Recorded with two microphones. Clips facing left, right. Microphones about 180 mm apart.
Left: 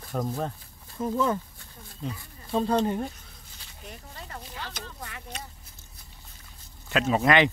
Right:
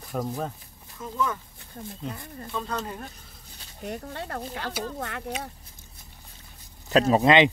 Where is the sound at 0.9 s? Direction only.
30° left (ahead or behind).